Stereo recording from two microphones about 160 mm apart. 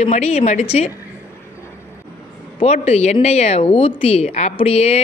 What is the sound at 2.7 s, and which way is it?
Speech, 40° left (ahead or behind).